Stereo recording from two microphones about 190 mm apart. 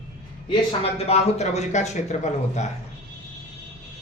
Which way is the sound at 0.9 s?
35° left (ahead or behind).